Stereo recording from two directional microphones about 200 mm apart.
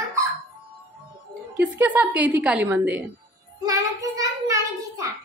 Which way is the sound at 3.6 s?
15° right (ahead or behind).